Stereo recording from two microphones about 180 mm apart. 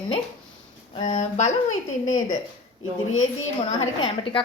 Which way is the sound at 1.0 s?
40° left (ahead or behind).